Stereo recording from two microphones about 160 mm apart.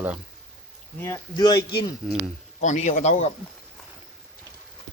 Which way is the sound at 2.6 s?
45° left (ahead or behind).